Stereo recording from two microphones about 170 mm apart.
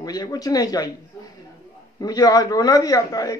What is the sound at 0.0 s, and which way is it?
A man's voice, 20° left (ahead or behind).